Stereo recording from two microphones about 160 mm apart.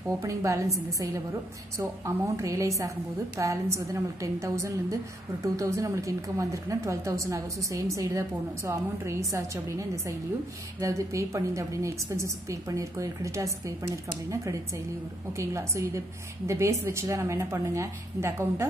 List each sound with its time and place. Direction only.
0.2 s a woman's voice: 20° right (ahead or behind)